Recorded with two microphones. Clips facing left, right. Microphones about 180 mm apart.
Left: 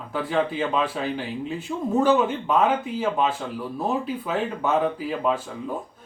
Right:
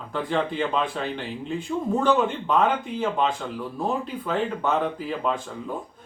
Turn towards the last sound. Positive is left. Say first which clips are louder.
# left 2 dB
turn(degrees=5)  # may be behind; listen again after turning